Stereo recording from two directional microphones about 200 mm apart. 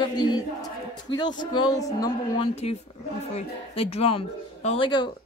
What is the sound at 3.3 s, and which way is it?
Speech, 30° left (ahead or behind).